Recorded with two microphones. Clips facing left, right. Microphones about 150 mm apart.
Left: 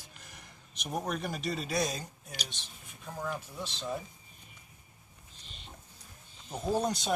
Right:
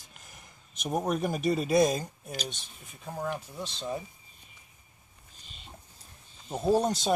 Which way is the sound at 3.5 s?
10° right (ahead or behind).